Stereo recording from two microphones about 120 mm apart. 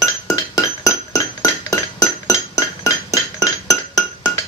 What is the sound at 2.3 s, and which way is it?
Music, 25° left (ahead or behind).